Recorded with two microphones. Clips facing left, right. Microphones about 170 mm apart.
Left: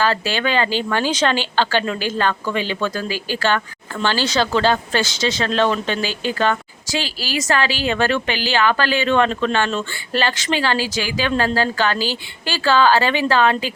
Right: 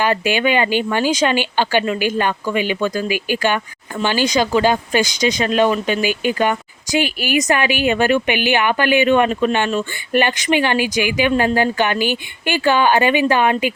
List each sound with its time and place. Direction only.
0.0 s speech: 15° right (ahead or behind)